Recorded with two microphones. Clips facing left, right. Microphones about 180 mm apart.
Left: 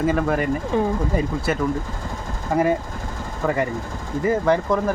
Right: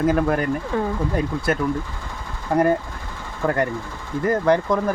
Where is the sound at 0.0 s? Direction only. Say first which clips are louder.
Right 1 dB; centre (ahead or behind).